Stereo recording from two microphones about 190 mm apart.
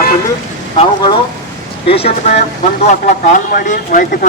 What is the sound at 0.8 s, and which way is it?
Speech, 25° left (ahead or behind).